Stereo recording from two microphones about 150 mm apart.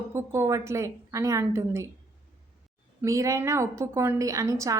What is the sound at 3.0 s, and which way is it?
A woman's voice, 20° right (ahead or behind).